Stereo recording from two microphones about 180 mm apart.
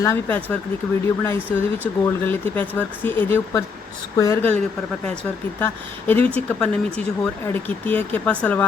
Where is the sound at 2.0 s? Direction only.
10° left (ahead or behind).